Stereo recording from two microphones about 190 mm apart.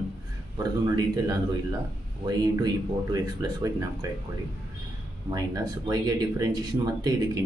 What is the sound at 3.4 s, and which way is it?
Speech, 20° right (ahead or behind).